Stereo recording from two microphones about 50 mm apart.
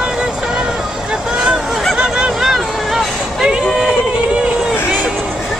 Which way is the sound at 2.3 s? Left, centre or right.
Centre.